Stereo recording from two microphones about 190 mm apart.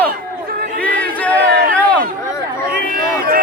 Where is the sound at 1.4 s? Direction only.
60° right (ahead or behind).